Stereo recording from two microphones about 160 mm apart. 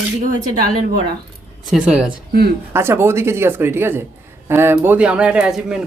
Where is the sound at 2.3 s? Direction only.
75° right (ahead or behind).